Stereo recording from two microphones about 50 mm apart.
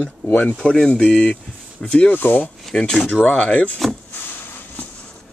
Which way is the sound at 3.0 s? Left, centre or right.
Left.